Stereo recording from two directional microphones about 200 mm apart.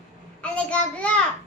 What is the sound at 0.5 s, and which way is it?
Child singing, 5° left (ahead or behind).